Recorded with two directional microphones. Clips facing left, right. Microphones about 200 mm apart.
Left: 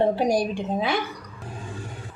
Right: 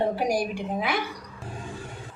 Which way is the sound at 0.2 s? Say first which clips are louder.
Left 3 dB; 25° left (ahead or behind).